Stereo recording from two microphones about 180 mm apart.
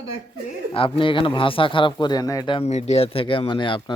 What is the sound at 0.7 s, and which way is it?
Speech, 30° left (ahead or behind).